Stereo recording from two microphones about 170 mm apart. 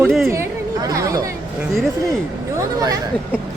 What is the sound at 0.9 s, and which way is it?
Speech, 20° right (ahead or behind).